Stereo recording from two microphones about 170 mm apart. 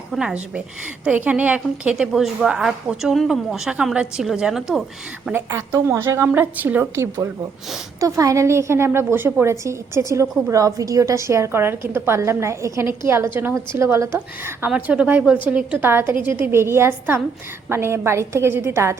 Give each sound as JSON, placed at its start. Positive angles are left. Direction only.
{"t": 0.1, "sound": "a woman's voice", "side_deg": -5}
{"t": 5.3, "sound": "a woman's voice", "side_deg": -15}